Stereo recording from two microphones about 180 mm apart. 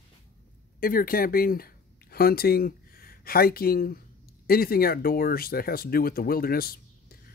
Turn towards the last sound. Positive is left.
turn(degrees=55)  # may be behind; listen again after turning